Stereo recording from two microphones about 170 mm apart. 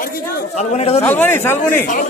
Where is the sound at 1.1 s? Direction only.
15° left (ahead or behind).